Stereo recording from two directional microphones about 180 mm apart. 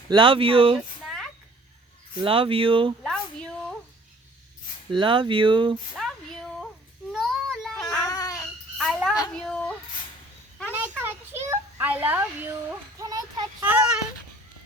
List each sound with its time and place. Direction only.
0.1 s speech: 30° right (ahead or behind)
2.2 s speech: 30° right (ahead or behind)
3.0 s a sound: 5° left (ahead or behind)
4.9 s speech: 25° right (ahead or behind)
6.0 s a sound: 5° left (ahead or behind)
7.1 s child singing: centre (ahead or behind)
7.9 s child singing: 20° left (ahead or behind)
8.8 s a sound: centre (ahead or behind)
9.3 s child singing: 5° left (ahead or behind)
11.0 s children playing: 15° right (ahead or behind)
13.0 s a sound: 20° right (ahead or behind)
13.6 s child singing: 10° right (ahead or behind)